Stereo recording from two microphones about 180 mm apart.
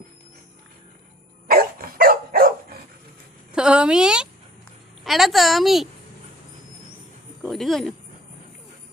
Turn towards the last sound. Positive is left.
turn(degrees=0)  # may be behind; listen again after turning